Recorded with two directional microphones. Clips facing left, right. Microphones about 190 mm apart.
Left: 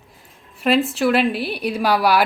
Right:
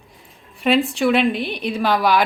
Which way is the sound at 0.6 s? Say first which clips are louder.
Even; centre (ahead or behind).